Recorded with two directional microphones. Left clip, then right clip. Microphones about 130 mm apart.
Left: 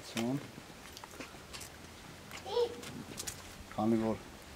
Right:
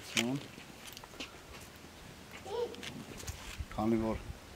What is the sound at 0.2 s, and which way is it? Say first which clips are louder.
Speech: right 4 dB; 20° right (ahead or behind).